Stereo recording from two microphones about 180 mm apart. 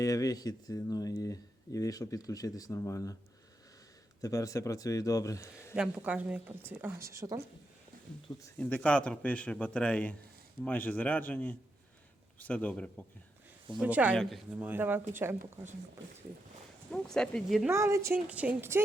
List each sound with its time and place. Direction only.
0.0 s speech: 20° left (ahead or behind)
4.2 s speech: 20° left (ahead or behind)
5.7 s speech: 5° right (ahead or behind)
8.4 s speech: 15° left (ahead or behind)
13.7 s speech: 10° right (ahead or behind)
16.9 s speech: 5° left (ahead or behind)
17.7 s speech: 15° right (ahead or behind)